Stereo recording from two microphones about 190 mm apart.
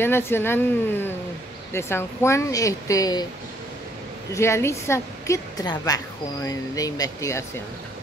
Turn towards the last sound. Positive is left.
turn(degrees=15)  # may be behind; listen again after turning